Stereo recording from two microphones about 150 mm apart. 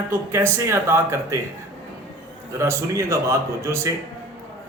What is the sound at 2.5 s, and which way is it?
A man's voice, 20° right (ahead or behind).